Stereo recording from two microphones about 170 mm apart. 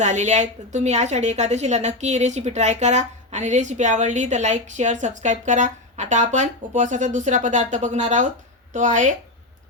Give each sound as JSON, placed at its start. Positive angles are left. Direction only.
{"t": 0.0, "sound": "a woman's voice", "side_deg": -45}